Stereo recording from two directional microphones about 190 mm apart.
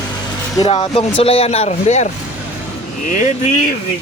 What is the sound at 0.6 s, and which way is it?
A man's voice, 30° left (ahead or behind).